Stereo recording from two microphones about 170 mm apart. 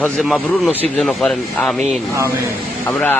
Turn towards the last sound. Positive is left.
turn(degrees=10)  # may be behind; listen again after turning